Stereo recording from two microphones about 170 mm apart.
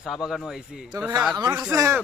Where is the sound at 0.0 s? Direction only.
Centre (ahead or behind).